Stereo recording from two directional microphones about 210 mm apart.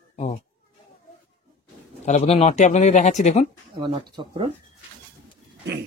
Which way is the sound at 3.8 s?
20° right (ahead or behind).